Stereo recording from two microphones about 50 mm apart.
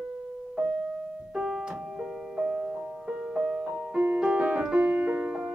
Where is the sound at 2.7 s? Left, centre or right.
Centre.